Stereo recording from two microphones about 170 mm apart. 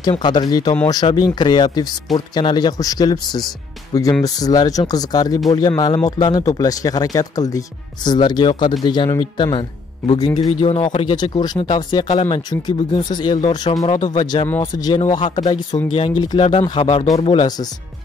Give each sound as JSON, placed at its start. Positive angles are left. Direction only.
{"t": 0.1, "sound": "speech", "side_deg": 25}
{"t": 10.5, "sound": "speech", "side_deg": 35}
{"t": 15.0, "sound": "speech", "side_deg": 35}